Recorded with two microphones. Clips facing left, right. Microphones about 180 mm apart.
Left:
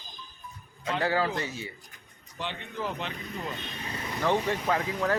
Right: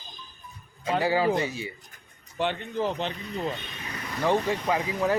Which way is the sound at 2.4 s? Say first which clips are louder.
Right 9 dB; 60° right (ahead or behind).